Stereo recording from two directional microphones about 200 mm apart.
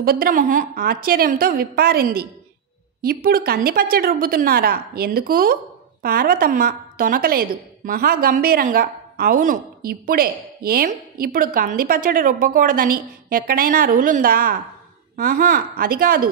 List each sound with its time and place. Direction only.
0.0 s a woman's voice: 45° right (ahead or behind)
3.3 s a woman's voice: 50° right (ahead or behind)